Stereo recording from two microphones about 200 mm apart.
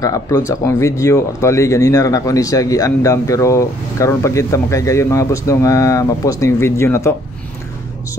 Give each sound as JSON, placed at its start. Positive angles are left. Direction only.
{"t": 0.0, "sound": "speech", "side_deg": 15}